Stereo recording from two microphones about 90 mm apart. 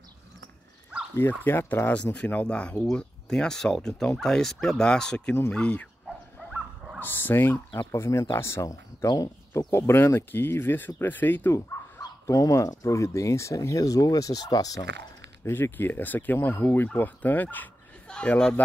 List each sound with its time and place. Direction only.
1.1 s speech: 25° left (ahead or behind)
2.1 s speech: 10° left (ahead or behind)
6.0 s dog: 5° right (ahead or behind)
7.0 s speech: 20° left (ahead or behind)
9.0 s speech: 45° left (ahead or behind)
9.7 s speech: 30° left (ahead or behind)
11.5 s speech: 40° left (ahead or behind)
15.4 s speech: 25° left (ahead or behind)